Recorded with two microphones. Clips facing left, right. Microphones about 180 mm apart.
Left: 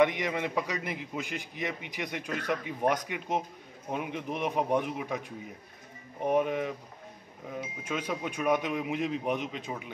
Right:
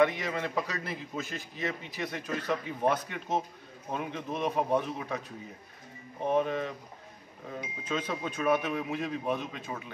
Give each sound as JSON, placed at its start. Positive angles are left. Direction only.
{"t": 0.0, "sound": "a man's voice", "side_deg": 15}
{"t": 6.2, "sound": "a man's voice", "side_deg": 15}
{"t": 7.9, "sound": "a man's voice", "side_deg": 10}